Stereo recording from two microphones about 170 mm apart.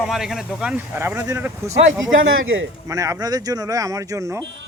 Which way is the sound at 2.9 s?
20° right (ahead or behind).